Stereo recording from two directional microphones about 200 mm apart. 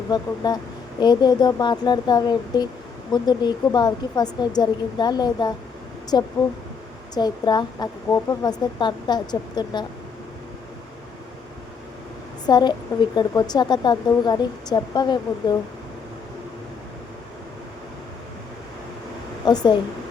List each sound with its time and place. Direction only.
0.1 s speech: 20° left (ahead or behind)
12.5 s speech: 20° left (ahead or behind)
19.5 s speech: 20° left (ahead or behind)